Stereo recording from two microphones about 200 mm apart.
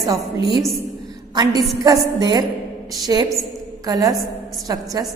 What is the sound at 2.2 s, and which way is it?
A woman's voice, 20° right (ahead or behind).